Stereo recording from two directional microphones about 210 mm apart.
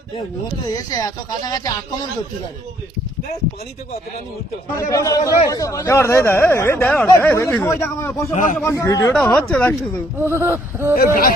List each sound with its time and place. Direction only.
0.7 s speech: 15° left (ahead or behind)
4.9 s speech: 15° left (ahead or behind)
8.3 s a man's voice: 35° left (ahead or behind)
8.6 s speech: 15° left (ahead or behind)
9.1 s speech: 5° left (ahead or behind)
10.2 s speech: 10° right (ahead or behind)
10.9 s speech: 45° left (ahead or behind)